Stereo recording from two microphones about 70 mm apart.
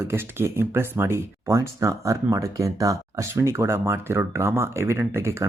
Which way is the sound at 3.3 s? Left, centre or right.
Right.